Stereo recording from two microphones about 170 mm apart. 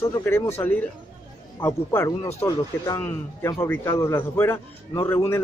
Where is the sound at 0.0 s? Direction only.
15° left (ahead or behind).